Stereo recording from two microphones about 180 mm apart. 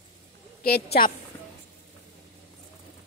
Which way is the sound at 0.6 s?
60° left (ahead or behind).